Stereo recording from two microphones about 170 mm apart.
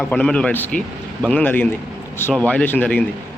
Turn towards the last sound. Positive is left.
turn(degrees=10)  # may be behind; listen again after turning